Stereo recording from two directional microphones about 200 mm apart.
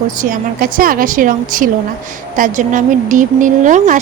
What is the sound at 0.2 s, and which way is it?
A woman's voice, 45° right (ahead or behind).